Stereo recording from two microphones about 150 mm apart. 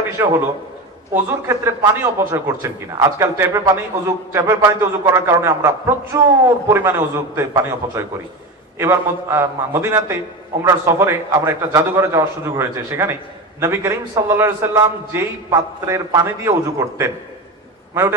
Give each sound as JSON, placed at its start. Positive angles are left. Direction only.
{"t": 0.2, "sound": "a man's voice", "side_deg": -20}